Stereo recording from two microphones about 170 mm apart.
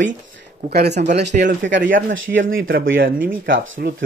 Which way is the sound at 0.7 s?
70° right (ahead or behind).